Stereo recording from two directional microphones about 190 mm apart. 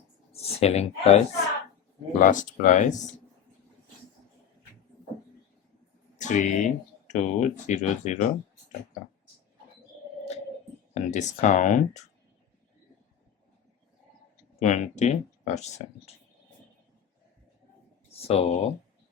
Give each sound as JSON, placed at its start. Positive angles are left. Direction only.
{"t": 0.3, "sound": "speech", "side_deg": 35}
{"t": 6.1, "sound": "speech", "side_deg": 40}
{"t": 10.9, "sound": "speech", "side_deg": 40}
{"t": 14.6, "sound": "speech", "side_deg": 40}
{"t": 18.2, "sound": "speech", "side_deg": 30}